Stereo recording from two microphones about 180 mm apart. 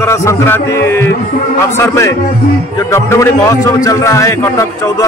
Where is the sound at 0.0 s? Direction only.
15° left (ahead or behind).